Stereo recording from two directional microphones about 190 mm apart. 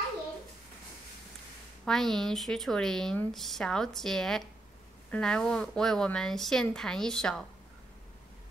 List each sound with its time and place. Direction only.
1.9 s a woman's voice: centre (ahead or behind)